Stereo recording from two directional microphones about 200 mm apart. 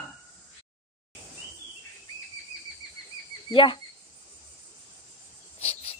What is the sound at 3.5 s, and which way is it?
Speech, 25° left (ahead or behind).